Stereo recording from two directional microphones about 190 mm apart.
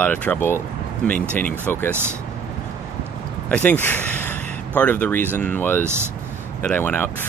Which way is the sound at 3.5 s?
10° left (ahead or behind).